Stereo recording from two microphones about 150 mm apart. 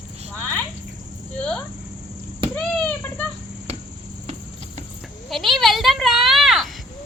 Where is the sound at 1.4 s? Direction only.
10° left (ahead or behind).